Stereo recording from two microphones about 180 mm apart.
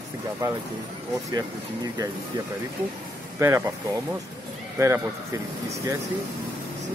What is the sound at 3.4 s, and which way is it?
Speech, 15° right (ahead or behind).